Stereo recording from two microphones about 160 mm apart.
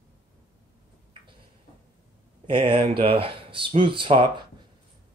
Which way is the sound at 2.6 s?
35° right (ahead or behind).